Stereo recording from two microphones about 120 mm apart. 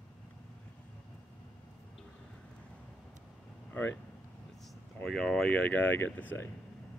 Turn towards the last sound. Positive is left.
turn(degrees=15)  # may be behind; listen again after turning